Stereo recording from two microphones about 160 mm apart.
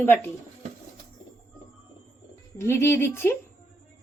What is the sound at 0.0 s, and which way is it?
Speech, 15° left (ahead or behind).